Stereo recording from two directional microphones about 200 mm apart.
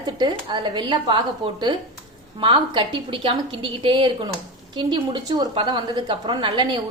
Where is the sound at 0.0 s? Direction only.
20° right (ahead or behind).